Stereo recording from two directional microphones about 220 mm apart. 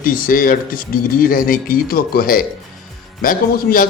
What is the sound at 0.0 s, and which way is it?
A man's voice, 40° left (ahead or behind).